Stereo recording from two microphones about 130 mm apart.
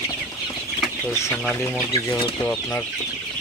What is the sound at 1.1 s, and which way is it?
Speech, 20° left (ahead or behind).